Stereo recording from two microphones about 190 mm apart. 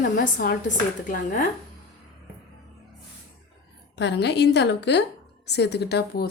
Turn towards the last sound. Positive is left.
turn(degrees=55)  # may be behind; listen again after turning